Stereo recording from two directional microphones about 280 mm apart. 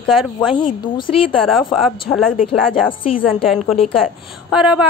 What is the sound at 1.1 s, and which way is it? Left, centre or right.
Speech, left.